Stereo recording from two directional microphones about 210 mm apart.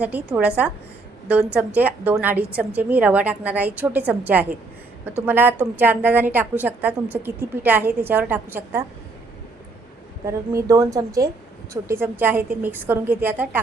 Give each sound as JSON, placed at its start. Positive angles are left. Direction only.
{"t": 0.0, "sound": "a woman's voice", "side_deg": -5}
{"t": 10.2, "sound": "a woman's voice", "side_deg": -15}